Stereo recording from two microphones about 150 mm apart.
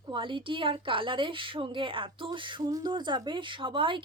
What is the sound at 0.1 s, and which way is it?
A woman's voice, 35° right (ahead or behind).